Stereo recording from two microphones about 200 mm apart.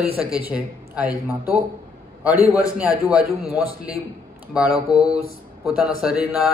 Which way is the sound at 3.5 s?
10° right (ahead or behind).